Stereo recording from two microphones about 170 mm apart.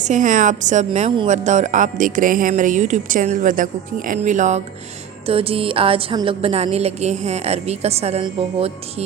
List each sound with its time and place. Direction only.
0.0 s speech: 45° right (ahead or behind)
5.2 s music: 35° right (ahead or behind)